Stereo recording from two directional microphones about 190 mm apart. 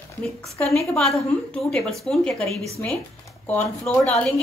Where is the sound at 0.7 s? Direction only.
Centre (ahead or behind).